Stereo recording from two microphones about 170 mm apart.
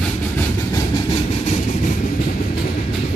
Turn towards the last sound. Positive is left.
turn(degrees=45)  # may be behind; listen again after turning